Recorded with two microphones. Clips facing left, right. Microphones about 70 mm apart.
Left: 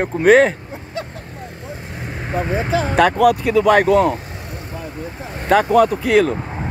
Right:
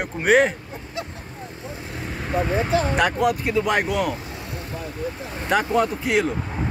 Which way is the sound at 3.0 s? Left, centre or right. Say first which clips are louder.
Left 7 dB; left.